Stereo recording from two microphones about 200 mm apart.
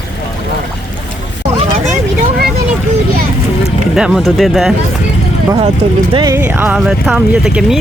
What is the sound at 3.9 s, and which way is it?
Speech, 5° right (ahead or behind).